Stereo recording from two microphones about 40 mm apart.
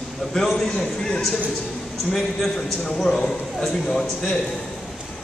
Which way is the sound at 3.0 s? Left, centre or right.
Centre.